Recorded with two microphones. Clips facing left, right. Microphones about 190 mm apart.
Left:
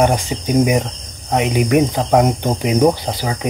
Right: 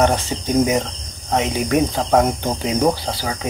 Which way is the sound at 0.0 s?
10° left (ahead or behind).